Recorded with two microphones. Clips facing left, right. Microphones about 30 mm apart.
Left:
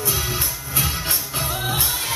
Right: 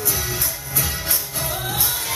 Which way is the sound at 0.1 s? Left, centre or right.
Left.